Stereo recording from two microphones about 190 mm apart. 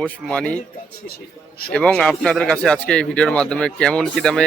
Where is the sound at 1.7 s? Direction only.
5° left (ahead or behind).